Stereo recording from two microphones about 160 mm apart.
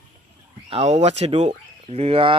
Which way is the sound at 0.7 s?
40° right (ahead or behind).